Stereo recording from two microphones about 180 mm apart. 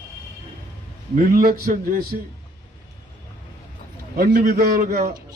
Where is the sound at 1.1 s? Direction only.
55° right (ahead or behind).